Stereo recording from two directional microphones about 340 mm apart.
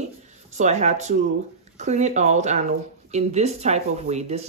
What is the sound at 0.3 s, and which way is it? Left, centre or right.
Speech, right.